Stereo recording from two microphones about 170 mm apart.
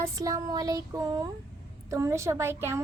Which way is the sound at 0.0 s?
20° right (ahead or behind).